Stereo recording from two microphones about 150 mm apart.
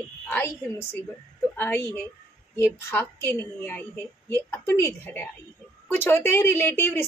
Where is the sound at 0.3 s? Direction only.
15° left (ahead or behind).